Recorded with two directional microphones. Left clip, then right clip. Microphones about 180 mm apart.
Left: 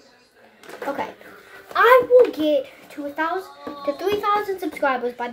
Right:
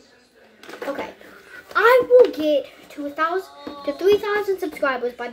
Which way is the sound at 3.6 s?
Centre (ahead or behind).